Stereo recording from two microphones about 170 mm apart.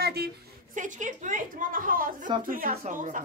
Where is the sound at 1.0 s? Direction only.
50° right (ahead or behind).